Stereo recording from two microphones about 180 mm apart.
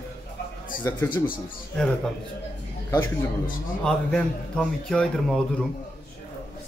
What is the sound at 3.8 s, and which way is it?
A man's voice, 5° left (ahead or behind).